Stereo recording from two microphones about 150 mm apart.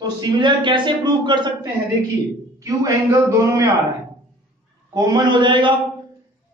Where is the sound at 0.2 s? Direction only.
30° right (ahead or behind).